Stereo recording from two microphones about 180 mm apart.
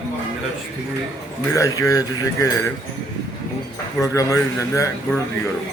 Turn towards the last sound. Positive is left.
turn(degrees=15)  # may be behind; listen again after turning